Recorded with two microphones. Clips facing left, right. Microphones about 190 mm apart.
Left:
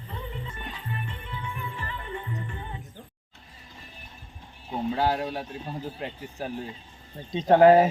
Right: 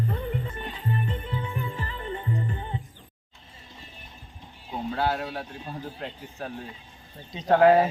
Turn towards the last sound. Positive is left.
turn(degrees=20)  # may be behind; listen again after turning